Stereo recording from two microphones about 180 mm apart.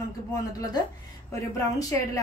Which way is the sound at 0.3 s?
20° left (ahead or behind).